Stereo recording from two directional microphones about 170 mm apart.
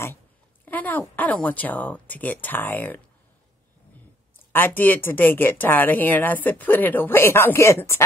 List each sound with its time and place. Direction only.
0.7 s speech: 10° left (ahead or behind)
4.5 s speech: 10° left (ahead or behind)